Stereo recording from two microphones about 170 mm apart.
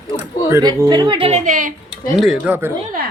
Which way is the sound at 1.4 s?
50° right (ahead or behind).